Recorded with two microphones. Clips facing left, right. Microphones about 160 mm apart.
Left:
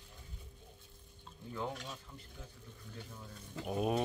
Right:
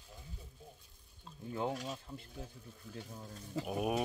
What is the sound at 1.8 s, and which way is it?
Speech, 40° right (ahead or behind).